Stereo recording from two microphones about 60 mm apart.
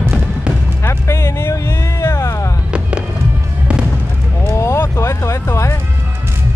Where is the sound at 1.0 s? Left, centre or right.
Left.